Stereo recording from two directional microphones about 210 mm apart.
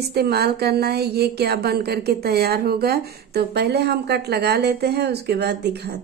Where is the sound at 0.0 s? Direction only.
50° right (ahead or behind).